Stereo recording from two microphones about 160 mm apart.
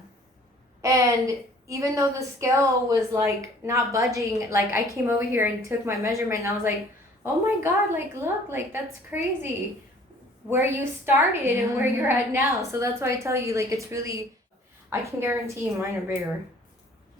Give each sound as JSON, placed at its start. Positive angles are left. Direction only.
{"t": 0.8, "sound": "a woman's voice", "side_deg": -20}
{"t": 10.5, "sound": "a woman's voice", "side_deg": -15}